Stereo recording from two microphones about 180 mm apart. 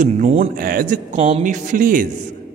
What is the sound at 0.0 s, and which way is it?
A woman's voice, 40° right (ahead or behind).